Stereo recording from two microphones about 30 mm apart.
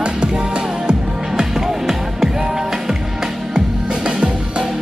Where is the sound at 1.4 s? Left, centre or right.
Centre.